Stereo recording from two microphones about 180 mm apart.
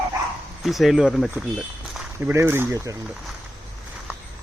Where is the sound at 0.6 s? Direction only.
Centre (ahead or behind).